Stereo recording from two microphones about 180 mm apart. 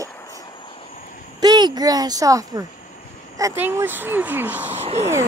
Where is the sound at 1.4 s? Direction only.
20° right (ahead or behind).